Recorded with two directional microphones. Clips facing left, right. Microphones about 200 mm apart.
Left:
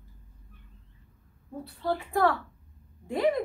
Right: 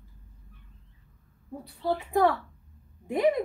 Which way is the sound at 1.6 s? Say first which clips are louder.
Right 1 dB; 15° right (ahead or behind).